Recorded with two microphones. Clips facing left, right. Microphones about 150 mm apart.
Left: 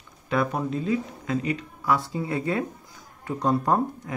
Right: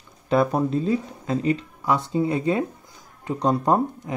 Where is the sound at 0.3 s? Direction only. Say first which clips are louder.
Right 5 dB; 30° right (ahead or behind).